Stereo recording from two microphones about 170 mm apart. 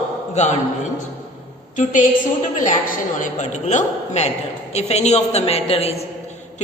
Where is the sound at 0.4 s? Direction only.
45° left (ahead or behind).